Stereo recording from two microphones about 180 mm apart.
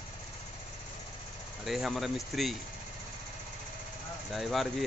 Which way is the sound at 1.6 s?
Centre (ahead or behind).